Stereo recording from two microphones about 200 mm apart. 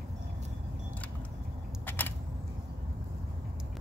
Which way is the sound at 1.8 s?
10° left (ahead or behind).